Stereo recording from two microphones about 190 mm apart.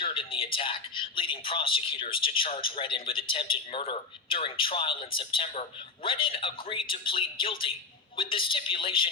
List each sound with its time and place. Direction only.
0.0 s speech: 30° left (ahead or behind)